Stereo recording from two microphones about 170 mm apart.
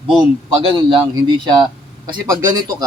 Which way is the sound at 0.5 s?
30° right (ahead or behind).